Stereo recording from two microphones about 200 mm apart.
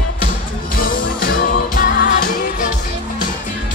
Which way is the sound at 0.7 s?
45° left (ahead or behind).